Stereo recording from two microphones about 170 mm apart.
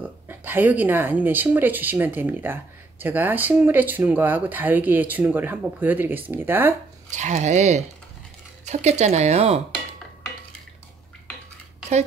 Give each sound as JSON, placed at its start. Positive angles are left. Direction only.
{"t": 0.0, "sound": "speech", "side_deg": -10}
{"t": 7.1, "sound": "speech", "side_deg": -45}